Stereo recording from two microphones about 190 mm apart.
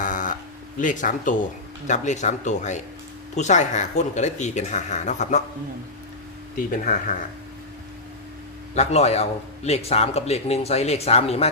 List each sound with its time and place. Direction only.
0.0 s a sound: 45° left (ahead or behind)
0.8 s a man's voice: 45° left (ahead or behind)
6.7 s speech: 45° left (ahead or behind)
8.7 s a man's voice: 35° left (ahead or behind)